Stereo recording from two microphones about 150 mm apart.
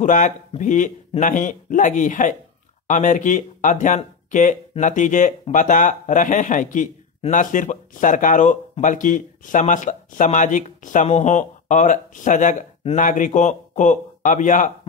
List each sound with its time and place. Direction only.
0.0 s speech: 55° left (ahead or behind)